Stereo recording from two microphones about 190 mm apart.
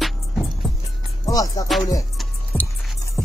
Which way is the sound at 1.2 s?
20° left (ahead or behind).